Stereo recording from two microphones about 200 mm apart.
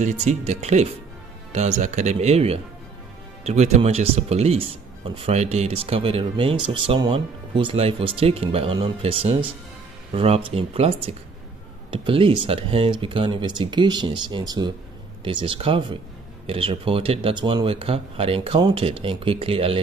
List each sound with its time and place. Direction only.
0.0 s speech: 35° right (ahead or behind)